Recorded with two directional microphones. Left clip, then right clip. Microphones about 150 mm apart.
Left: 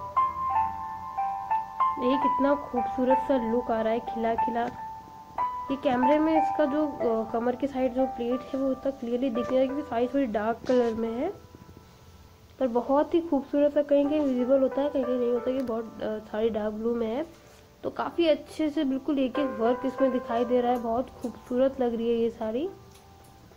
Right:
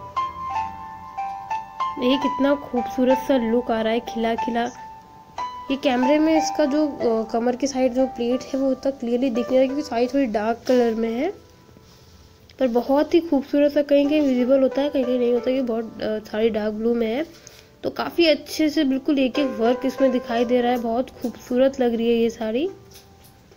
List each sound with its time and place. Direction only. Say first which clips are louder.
0.1 s music: even; 35° right (ahead or behind)
2.6 s speech: right 3 dB; 40° right (ahead or behind)
3.0 s a woman's voice: right 5 dB; 15° right (ahead or behind)
12.5 s a woman's voice: right 5 dB; 10° right (ahead or behind)